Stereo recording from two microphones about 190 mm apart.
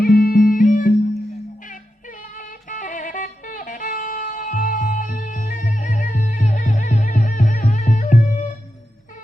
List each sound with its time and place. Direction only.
0.0 s music: 50° left (ahead or behind)